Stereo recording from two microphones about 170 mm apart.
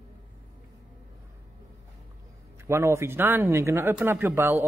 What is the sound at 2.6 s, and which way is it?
Speech, 15° right (ahead or behind).